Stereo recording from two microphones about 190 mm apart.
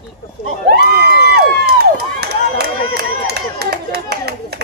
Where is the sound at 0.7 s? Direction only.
55° right (ahead or behind).